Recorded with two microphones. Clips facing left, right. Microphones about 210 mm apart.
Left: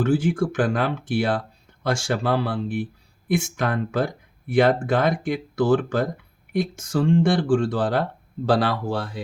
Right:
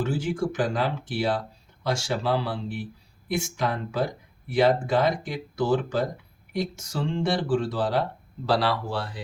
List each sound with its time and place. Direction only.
0.0 s speech: 50° left (ahead or behind)